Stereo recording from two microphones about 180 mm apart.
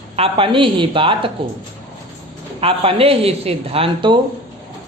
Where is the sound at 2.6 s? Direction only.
30° right (ahead or behind).